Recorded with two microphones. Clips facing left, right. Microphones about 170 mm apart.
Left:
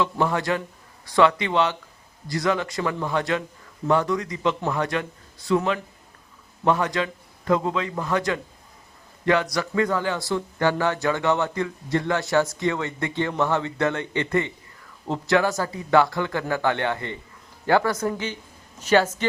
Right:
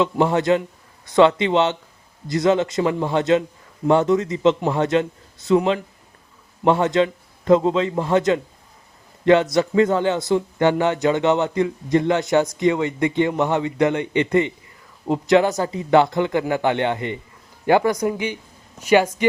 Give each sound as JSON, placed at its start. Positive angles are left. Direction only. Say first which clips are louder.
{"t": 0.0, "sound": "speech", "louder": "right 5 dB", "side_deg": -20}